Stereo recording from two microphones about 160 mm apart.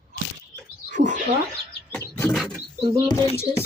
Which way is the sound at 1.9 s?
15° left (ahead or behind).